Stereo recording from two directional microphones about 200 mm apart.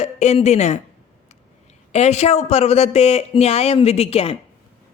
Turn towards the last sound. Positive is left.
turn(degrees=30)  # may be behind; listen again after turning